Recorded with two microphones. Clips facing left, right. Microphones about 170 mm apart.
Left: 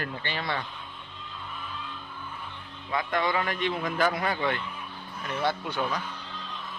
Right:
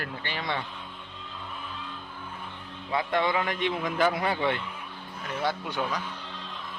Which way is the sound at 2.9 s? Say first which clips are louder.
Right 1 dB; 25° right (ahead or behind).